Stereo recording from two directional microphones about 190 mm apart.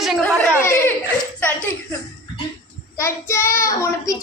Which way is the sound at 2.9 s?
15° left (ahead or behind).